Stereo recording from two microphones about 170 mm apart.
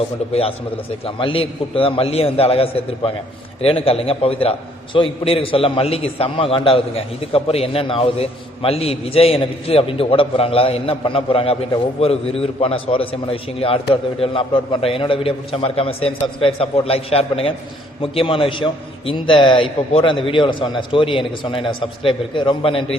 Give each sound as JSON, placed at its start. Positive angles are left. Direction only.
{"t": 1.0, "sound": "a man's voice", "side_deg": 30}